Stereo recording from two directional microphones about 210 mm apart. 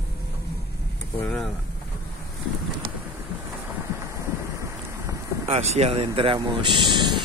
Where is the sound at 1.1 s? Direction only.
10° left (ahead or behind).